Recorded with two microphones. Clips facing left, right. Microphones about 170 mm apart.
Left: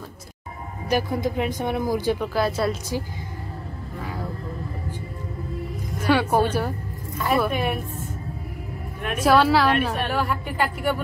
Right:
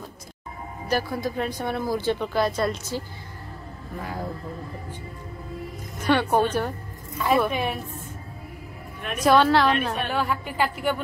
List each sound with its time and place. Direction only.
0.8 s speech: 15° left (ahead or behind)
6.0 s a woman's voice: 5° left (ahead or behind)
9.2 s a woman's voice: 5° left (ahead or behind)